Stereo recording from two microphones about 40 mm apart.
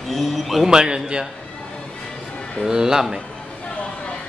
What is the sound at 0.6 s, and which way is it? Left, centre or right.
Speech, centre.